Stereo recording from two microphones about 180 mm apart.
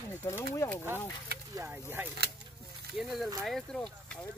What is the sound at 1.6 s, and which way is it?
Speech, 10° right (ahead or behind).